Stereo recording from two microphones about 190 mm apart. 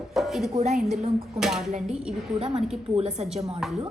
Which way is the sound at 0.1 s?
Centre (ahead or behind).